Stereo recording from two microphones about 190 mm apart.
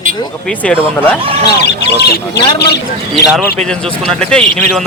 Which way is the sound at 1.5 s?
60° left (ahead or behind).